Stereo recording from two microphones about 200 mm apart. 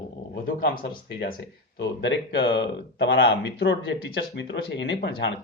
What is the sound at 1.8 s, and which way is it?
Speech, 65° left (ahead or behind).